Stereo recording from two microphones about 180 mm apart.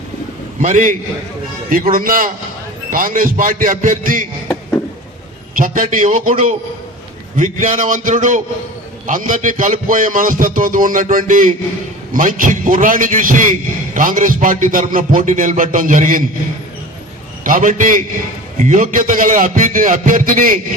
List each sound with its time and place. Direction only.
0.6 s a man's voice: 45° right (ahead or behind)
5.5 s a man's voice: 50° right (ahead or behind)
7.3 s a man's voice: 45° right (ahead or behind)
17.4 s a man's voice: 45° right (ahead or behind)